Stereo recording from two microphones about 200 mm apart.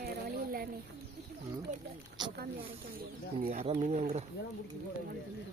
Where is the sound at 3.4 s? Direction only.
30° right (ahead or behind).